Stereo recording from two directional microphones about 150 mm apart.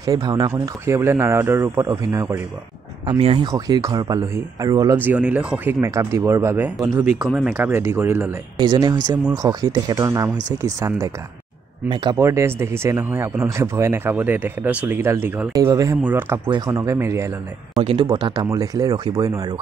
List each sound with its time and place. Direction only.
0.0 s speech: 25° right (ahead or behind)
3.2 s speech: 40° right (ahead or behind)
3.4 s speech: 25° right (ahead or behind)
4.9 s speech: 10° right (ahead or behind)
7.2 s speech: centre (ahead or behind)
7.5 s speech: 15° right (ahead or behind)
8.5 s speech: 30° right (ahead or behind)
11.9 s speech: 30° right (ahead or behind)
12.2 s speech: 20° right (ahead or behind)
15.5 s speech: 25° right (ahead or behind)
16.0 s speech: 15° right (ahead or behind)
16.4 s speech: 25° right (ahead or behind)